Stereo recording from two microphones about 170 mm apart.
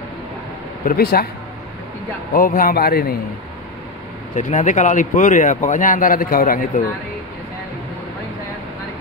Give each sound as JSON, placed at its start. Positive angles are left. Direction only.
{"t": 0.8, "sound": "a man's voice", "side_deg": 65}
{"t": 2.3, "sound": "a man's voice", "side_deg": 55}
{"t": 4.4, "sound": "speech", "side_deg": 45}